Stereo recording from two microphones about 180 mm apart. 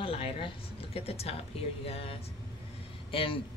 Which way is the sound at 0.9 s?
35° left (ahead or behind).